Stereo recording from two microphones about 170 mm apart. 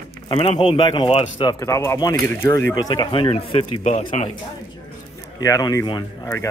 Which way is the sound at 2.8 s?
25° left (ahead or behind).